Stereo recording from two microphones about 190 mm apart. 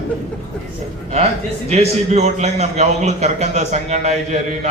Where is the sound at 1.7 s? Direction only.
35° right (ahead or behind).